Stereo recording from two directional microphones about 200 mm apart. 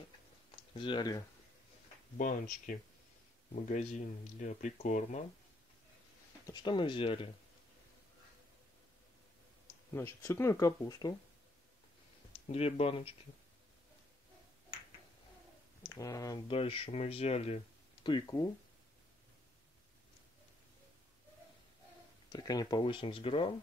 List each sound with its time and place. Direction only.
0.7 s speech: 25° left (ahead or behind)
2.1 s speech: 40° left (ahead or behind)
6.4 s speech: 20° left (ahead or behind)
9.9 s speech: 15° left (ahead or behind)
12.3 s speech: 30° left (ahead or behind)
15.8 s speech: 15° left (ahead or behind)
22.3 s speech: 20° left (ahead or behind)